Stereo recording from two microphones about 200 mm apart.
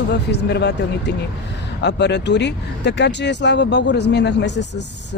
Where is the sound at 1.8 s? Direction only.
60° left (ahead or behind).